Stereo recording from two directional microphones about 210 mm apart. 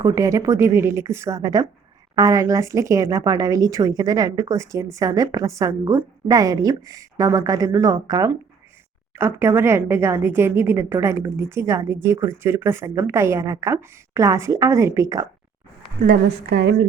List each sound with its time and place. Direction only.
0.0 s a woman's voice: 15° right (ahead or behind)
16.0 s a woman's voice: 55° right (ahead or behind)